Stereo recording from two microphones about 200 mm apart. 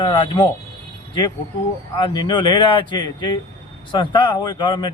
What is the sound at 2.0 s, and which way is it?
A man's voice, 20° left (ahead or behind).